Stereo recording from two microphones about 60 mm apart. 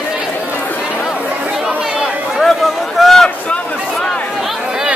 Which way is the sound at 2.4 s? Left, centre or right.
Centre.